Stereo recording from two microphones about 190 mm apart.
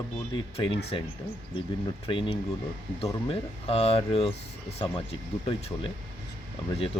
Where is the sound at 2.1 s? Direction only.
25° left (ahead or behind).